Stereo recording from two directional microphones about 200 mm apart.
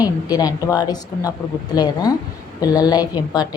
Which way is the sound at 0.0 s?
20° left (ahead or behind).